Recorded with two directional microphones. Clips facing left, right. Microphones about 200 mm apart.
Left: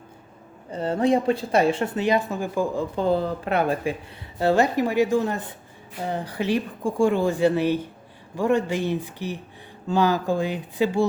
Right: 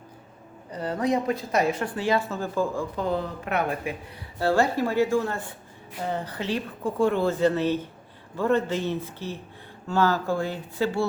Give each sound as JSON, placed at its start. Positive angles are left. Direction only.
{"t": 0.7, "sound": "speech", "side_deg": 25}
{"t": 2.9, "sound": "speech", "side_deg": 30}
{"t": 4.4, "sound": "speech", "side_deg": 20}